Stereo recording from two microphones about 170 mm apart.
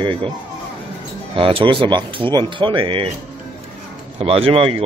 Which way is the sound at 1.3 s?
30° right (ahead or behind).